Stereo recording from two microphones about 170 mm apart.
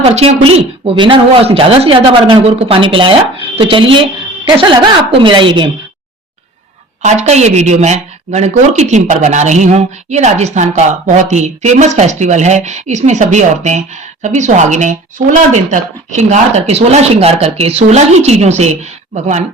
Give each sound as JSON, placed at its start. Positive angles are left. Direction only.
{"t": 0.1, "sound": "a woman's voice", "side_deg": -35}
{"t": 7.0, "sound": "a woman's voice", "side_deg": -40}